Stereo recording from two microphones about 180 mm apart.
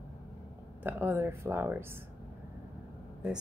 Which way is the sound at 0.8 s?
10° right (ahead or behind).